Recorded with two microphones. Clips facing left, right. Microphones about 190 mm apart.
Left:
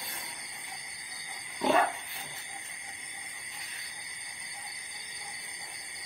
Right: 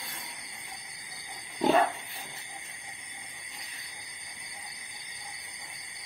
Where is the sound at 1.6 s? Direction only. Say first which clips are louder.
Right 2 dB; 30° right (ahead or behind).